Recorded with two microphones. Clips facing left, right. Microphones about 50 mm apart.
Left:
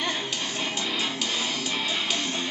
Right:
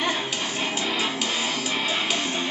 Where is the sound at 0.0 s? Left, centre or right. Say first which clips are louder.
Right 3 dB; centre.